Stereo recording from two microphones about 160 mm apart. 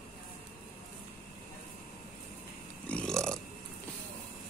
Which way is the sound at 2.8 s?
5° left (ahead or behind).